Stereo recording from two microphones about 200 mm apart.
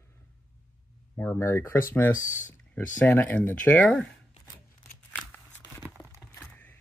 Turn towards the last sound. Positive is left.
turn(degrees=10)  # may be behind; listen again after turning